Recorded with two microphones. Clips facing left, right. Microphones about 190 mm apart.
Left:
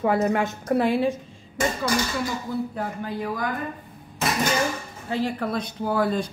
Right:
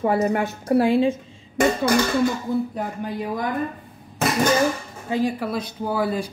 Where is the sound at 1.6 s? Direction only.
60° right (ahead or behind).